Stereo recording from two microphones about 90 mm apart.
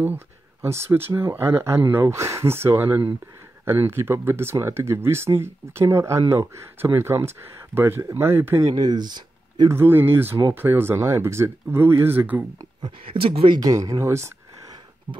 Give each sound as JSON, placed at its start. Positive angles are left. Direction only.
{"t": 0.0, "sound": "speech", "side_deg": -25}
{"t": 8.7, "sound": "speech", "side_deg": -50}
{"t": 9.7, "sound": "speech", "side_deg": -25}
{"t": 13.1, "sound": "speech", "side_deg": -90}
{"t": 13.6, "sound": "speech", "side_deg": -40}